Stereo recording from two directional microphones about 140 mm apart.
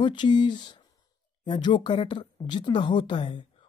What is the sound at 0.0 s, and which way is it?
Speech, 35° left (ahead or behind).